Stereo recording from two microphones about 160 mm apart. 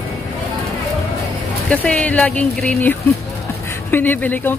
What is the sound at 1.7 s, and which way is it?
Speech, 10° left (ahead or behind).